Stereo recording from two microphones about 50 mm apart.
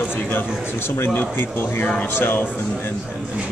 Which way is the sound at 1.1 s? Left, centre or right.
Left.